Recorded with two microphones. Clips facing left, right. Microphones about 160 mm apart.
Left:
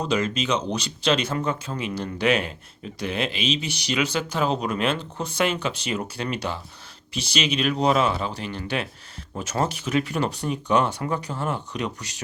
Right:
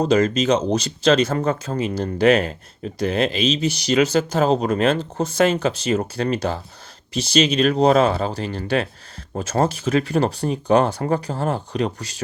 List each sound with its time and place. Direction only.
0.0 s speech: 45° right (ahead or behind)